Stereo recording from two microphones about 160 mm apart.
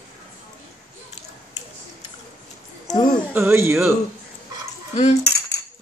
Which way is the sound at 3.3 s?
15° right (ahead or behind).